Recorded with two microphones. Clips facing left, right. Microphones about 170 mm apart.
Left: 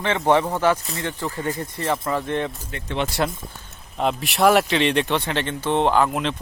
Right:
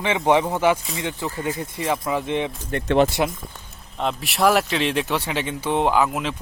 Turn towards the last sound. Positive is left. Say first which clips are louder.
# left 1 dB
turn(degrees=-5)  # may be behind; listen again after turning